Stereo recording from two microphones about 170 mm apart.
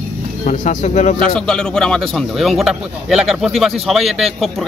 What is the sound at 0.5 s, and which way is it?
Speech, 45° left (ahead or behind).